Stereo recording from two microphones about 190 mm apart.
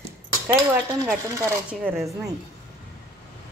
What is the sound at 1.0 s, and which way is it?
Speech, 10° right (ahead or behind).